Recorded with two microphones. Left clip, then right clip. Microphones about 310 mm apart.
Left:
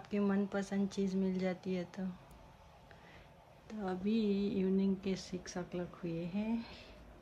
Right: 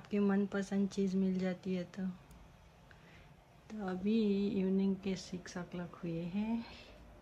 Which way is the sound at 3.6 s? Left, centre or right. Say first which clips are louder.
Even; centre.